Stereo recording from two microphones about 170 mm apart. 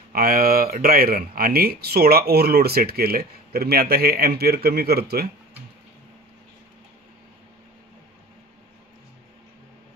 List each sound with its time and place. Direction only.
0.1 s speech: 60° right (ahead or behind)